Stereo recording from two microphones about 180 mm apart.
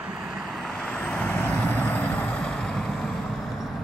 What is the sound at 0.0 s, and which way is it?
Vehicle, 5° right (ahead or behind).